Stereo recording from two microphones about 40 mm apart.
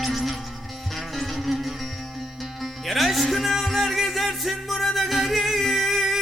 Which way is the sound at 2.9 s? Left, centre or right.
Centre.